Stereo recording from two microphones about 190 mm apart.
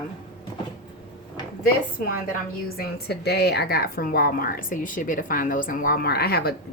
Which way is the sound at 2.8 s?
55° left (ahead or behind).